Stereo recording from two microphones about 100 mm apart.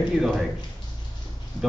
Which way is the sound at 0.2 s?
5° right (ahead or behind).